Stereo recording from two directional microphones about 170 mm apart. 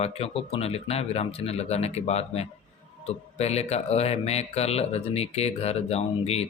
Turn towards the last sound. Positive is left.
turn(degrees=35)  # may be behind; listen again after turning